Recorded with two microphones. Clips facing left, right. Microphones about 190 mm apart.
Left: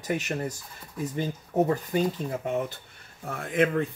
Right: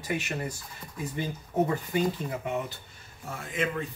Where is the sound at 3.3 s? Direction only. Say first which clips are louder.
Left 7 dB; 60° left (ahead or behind).